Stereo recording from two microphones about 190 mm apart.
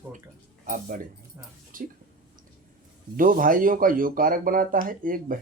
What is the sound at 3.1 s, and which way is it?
Speech, 45° right (ahead or behind).